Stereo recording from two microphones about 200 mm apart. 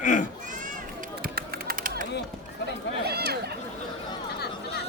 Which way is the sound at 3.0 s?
55° right (ahead or behind).